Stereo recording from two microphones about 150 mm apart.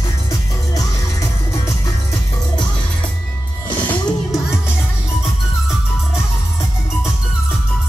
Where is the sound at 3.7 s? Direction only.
10° left (ahead or behind).